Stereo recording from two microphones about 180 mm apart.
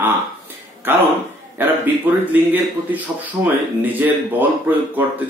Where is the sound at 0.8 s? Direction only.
10° right (ahead or behind).